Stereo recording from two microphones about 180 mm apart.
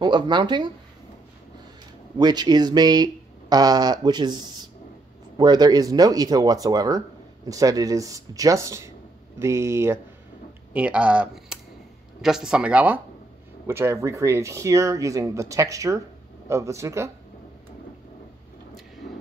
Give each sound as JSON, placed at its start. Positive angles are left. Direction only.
{"t": 0.0, "sound": "speech", "side_deg": -25}
{"t": 2.1, "sound": "speech", "side_deg": -25}